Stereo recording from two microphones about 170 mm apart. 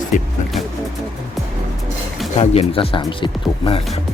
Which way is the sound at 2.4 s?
35° left (ahead or behind).